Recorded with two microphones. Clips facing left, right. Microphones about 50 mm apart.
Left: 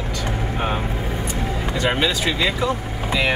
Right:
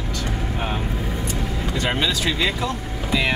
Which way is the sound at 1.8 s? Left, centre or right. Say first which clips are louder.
Left 2 dB; centre.